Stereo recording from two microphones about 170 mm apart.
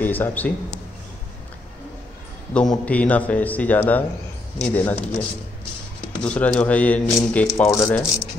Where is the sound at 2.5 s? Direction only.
5° left (ahead or behind).